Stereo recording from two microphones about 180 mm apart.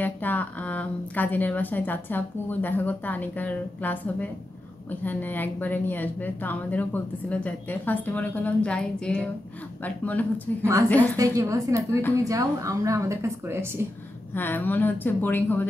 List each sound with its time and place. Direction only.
0.0 s a woman's voice: 10° left (ahead or behind)
11.1 s speech: 20° right (ahead or behind)
14.3 s a woman's voice: 10° left (ahead or behind)